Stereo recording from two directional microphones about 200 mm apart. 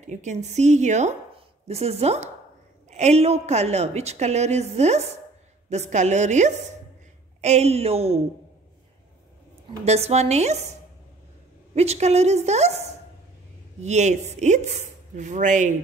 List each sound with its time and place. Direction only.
0.0 s a woman's voice: 35° right (ahead or behind)
9.8 s a woman's voice: 30° right (ahead or behind)